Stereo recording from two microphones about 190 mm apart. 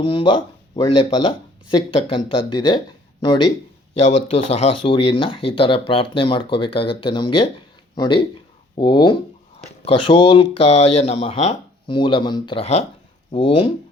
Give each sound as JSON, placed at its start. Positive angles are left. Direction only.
{"t": 0.0, "sound": "speech", "side_deg": 25}